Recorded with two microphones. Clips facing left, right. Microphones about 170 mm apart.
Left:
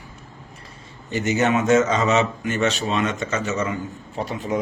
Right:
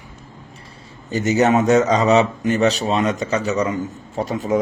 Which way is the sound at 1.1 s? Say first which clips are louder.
Right 4 dB; 40° right (ahead or behind).